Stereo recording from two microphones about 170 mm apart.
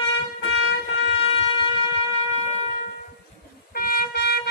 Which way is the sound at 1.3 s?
35° left (ahead or behind).